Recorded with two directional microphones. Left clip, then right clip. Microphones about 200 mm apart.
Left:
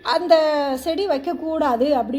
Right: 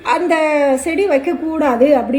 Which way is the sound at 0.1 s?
30° left (ahead or behind).